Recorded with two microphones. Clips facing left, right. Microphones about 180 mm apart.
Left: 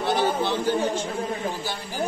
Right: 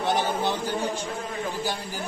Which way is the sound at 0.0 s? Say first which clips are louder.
Left 2 dB; 20° right (ahead or behind).